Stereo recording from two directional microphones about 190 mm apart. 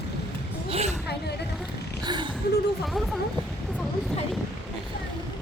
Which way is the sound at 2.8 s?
Centre (ahead or behind).